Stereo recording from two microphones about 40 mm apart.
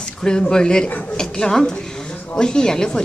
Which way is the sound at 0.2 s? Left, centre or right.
Centre.